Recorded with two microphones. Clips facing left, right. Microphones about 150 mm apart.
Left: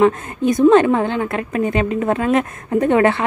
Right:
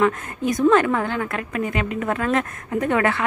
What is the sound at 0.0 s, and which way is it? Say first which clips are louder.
A woman's voice: left 6 dB; 25° left (ahead or behind).